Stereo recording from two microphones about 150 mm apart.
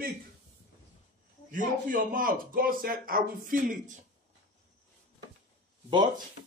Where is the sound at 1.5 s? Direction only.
65° right (ahead or behind).